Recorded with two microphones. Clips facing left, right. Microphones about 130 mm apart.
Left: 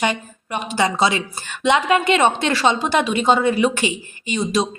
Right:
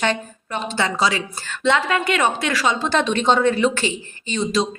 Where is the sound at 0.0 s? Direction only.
15° left (ahead or behind).